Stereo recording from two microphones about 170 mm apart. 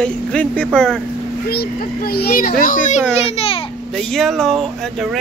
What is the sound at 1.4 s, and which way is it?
A child's voice, 65° left (ahead or behind).